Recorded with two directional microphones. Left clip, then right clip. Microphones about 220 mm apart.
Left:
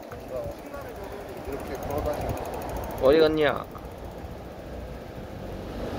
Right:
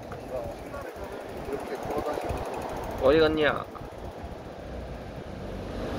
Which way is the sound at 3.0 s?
25° left (ahead or behind).